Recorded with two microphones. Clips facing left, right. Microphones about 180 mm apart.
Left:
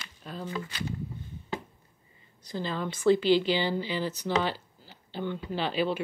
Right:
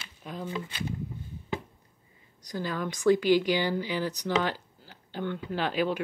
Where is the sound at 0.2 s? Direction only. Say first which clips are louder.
Right 1 dB; 10° right (ahead or behind).